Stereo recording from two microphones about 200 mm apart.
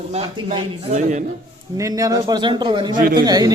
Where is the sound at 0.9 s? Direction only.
40° right (ahead or behind).